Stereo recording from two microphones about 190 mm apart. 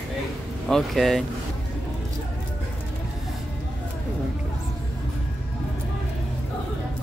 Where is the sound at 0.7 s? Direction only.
Centre (ahead or behind).